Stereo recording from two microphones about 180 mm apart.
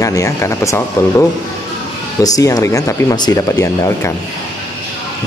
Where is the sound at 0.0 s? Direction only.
20° left (ahead or behind).